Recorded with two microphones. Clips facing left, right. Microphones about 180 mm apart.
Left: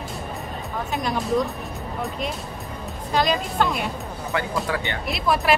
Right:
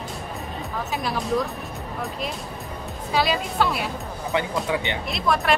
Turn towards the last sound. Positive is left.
turn(degrees=0)  # may be behind; listen again after turning